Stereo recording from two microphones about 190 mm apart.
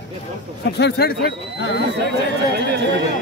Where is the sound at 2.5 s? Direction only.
65° right (ahead or behind).